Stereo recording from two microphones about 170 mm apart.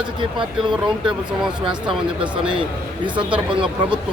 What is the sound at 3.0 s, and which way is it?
Speech, 30° right (ahead or behind).